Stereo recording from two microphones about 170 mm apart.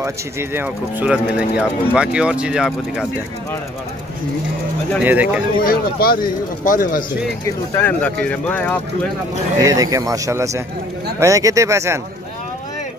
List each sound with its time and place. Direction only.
0.0 s speech: 15° right (ahead or behind)
5.0 s speech: 10° right (ahead or behind)
5.6 s speech: 60° left (ahead or behind)
7.4 s speech: 15° left (ahead or behind)
9.6 s speech: 20° right (ahead or behind)